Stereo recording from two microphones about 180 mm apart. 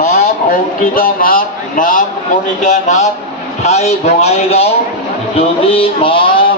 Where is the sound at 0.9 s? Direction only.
50° left (ahead or behind); by 6.2 s 30° left (ahead or behind).